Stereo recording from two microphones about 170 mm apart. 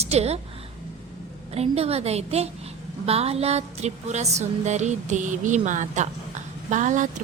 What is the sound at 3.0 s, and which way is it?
Music, 35° right (ahead or behind).